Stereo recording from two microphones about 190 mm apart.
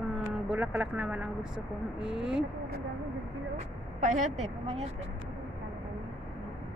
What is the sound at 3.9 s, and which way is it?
Speech, 40° right (ahead or behind).